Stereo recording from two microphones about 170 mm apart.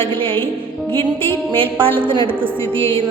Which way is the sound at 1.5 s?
30° right (ahead or behind).